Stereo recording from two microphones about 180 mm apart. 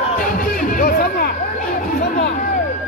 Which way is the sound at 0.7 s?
50° left (ahead or behind).